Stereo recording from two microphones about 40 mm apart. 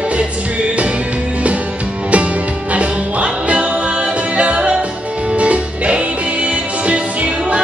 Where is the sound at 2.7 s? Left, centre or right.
Right.